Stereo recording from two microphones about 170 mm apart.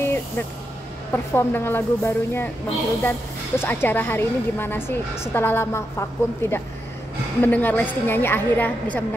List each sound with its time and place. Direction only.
0.0 s vehicle: 15° left (ahead or behind)
1.1 s a woman's voice: 15° left (ahead or behind)